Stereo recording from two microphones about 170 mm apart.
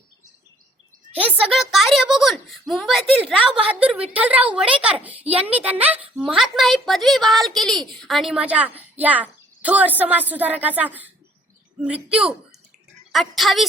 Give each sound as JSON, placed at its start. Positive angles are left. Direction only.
{"t": 1.1, "sound": "a woman's voice", "side_deg": -10}